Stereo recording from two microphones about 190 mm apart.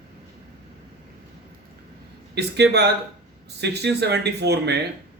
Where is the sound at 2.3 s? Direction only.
60° right (ahead or behind).